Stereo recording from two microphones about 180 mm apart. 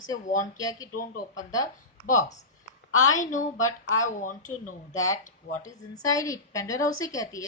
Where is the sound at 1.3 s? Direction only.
20° left (ahead or behind).